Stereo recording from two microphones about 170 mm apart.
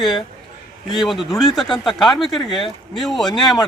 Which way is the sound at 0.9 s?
Centre (ahead or behind).